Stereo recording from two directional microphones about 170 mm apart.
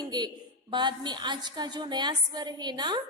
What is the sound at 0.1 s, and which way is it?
A woman's voice, 25° right (ahead or behind).